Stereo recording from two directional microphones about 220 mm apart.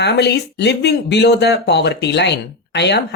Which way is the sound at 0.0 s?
50° left (ahead or behind).